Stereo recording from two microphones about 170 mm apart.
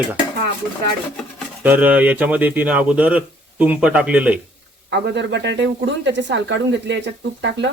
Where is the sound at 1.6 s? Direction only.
10° right (ahead or behind).